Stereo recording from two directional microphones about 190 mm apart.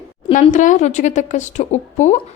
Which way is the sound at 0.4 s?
40° left (ahead or behind).